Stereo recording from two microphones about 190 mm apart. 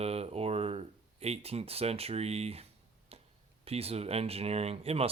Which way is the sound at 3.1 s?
30° right (ahead or behind).